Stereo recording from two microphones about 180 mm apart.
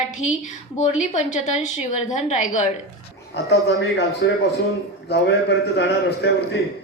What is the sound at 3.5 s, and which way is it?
A man's voice, 70° left (ahead or behind).